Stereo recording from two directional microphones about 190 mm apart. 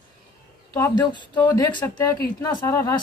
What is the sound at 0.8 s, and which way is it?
Speech, 25° left (ahead or behind).